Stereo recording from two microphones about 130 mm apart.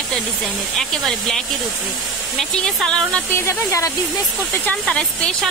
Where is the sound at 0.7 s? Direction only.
Centre (ahead or behind).